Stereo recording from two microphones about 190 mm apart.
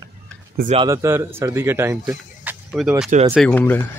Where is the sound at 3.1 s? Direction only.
35° right (ahead or behind).